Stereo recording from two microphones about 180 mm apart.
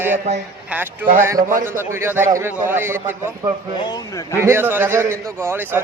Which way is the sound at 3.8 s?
20° left (ahead or behind).